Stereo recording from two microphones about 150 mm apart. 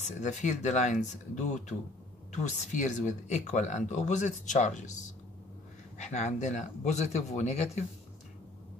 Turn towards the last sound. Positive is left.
turn(degrees=45)  # may be behind; listen again after turning